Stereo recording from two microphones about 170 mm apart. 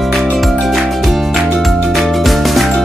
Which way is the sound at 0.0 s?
Centre (ahead or behind).